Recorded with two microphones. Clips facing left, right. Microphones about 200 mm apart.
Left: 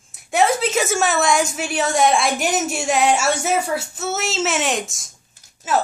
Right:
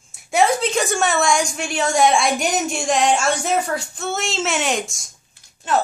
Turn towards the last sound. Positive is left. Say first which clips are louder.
# even
turn(degrees=5)  # may be behind; listen again after turning